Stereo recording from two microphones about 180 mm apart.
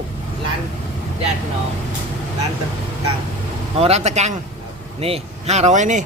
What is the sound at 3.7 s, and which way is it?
Speech, 35° right (ahead or behind).